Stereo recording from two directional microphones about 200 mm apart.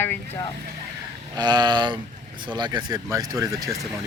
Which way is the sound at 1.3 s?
20° right (ahead or behind).